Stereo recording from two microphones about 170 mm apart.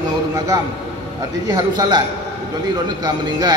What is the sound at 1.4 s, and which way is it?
Speech, 25° right (ahead or behind).